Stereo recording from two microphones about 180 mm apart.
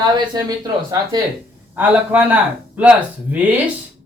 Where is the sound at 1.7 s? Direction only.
10° right (ahead or behind).